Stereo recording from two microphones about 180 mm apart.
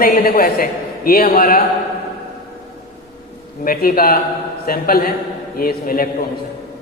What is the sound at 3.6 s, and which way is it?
A man's voice, 55° left (ahead or behind).